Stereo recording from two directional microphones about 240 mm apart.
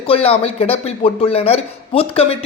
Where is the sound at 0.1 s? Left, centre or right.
Left.